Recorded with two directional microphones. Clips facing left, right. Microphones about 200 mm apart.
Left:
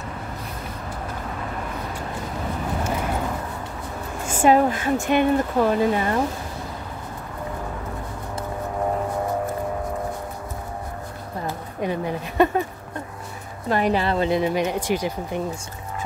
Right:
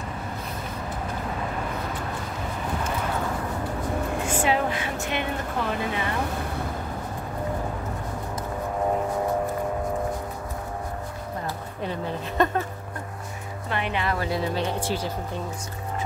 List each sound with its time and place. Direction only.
4.3 s speech: 45° left (ahead or behind)
11.4 s speech: 15° left (ahead or behind)
13.7 s speech: 40° left (ahead or behind)
14.1 s speech: 20° left (ahead or behind)